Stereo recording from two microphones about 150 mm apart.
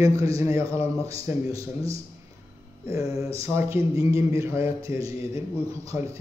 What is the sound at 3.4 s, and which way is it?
A man's voice, 15° right (ahead or behind).